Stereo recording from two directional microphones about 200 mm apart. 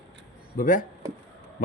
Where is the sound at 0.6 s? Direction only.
40° left (ahead or behind).